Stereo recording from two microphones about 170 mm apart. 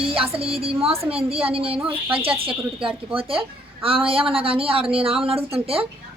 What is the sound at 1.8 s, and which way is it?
Speech, 10° right (ahead or behind).